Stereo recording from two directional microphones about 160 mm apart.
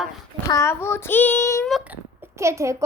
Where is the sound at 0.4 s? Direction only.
20° left (ahead or behind).